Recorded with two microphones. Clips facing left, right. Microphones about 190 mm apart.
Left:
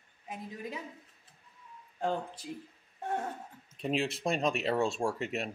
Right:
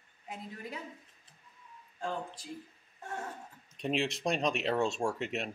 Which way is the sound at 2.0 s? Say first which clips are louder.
Left 4 dB; 60° left (ahead or behind).